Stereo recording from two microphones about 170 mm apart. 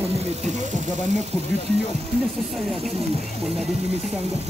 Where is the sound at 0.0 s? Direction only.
40° right (ahead or behind).